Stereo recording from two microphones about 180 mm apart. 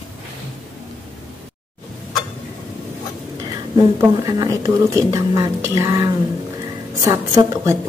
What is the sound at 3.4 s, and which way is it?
A woman's voice, 20° right (ahead or behind).